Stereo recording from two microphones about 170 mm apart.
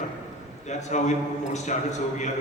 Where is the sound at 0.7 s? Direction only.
45° left (ahead or behind).